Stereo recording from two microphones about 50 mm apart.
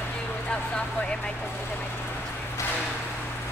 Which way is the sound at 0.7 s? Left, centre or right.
Left.